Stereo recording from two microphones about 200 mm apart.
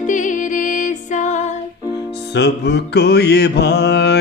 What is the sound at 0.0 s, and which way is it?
Music, 40° left (ahead or behind).